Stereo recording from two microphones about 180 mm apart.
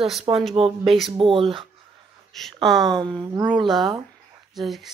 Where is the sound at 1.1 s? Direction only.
30° right (ahead or behind).